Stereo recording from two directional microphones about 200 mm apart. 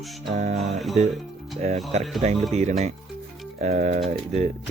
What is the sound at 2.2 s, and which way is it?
Speech, 35° right (ahead or behind).